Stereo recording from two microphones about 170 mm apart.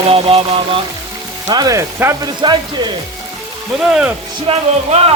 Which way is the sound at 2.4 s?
25° right (ahead or behind).